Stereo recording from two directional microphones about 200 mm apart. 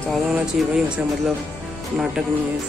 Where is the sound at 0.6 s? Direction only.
Centre (ahead or behind).